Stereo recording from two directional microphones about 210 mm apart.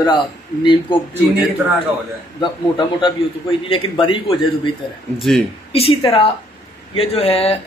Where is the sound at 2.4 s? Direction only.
20° left (ahead or behind).